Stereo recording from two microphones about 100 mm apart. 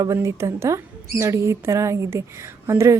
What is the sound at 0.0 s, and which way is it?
Speech, 30° right (ahead or behind).